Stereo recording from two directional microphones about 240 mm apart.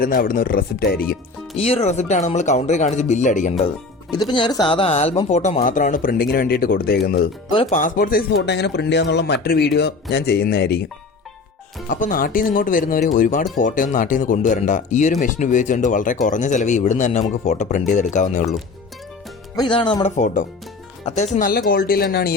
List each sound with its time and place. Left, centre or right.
0.0 s a man's voice: left
1.5 s speech: left
4.1 s a man's voice: centre; by 7.0 s left
7.5 s a man's voice: left
11.9 s a man's voice: left
19.5 s a man's voice: centre; by 22.3 s left